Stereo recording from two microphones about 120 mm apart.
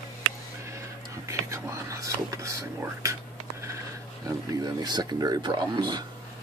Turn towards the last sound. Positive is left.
turn(degrees=-35)  # may be behind; listen again after turning